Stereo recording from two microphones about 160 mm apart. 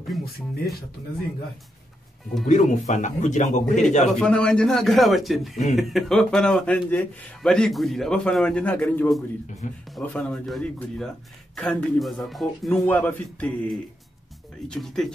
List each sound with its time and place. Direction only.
2.4 s a man's voice: 50° left (ahead or behind)
4.2 s a man's voice: 5° left (ahead or behind)